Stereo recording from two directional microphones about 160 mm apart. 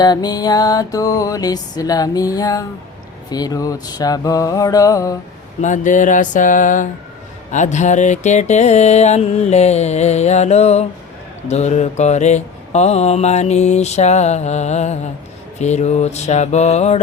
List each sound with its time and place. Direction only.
0.0 s mantra: 25° left (ahead or behind)
5.6 s mantra: 50° left (ahead or behind)